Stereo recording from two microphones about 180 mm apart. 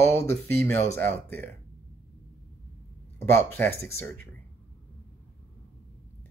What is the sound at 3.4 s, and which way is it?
Speech, 10° left (ahead or behind).